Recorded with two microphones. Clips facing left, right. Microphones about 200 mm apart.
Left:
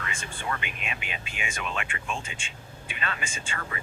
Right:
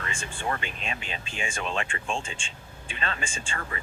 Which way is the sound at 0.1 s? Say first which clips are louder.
Right 3 dB; 30° right (ahead or behind).